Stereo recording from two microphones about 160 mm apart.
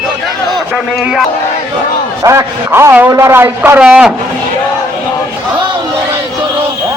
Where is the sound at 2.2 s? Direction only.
15° right (ahead or behind).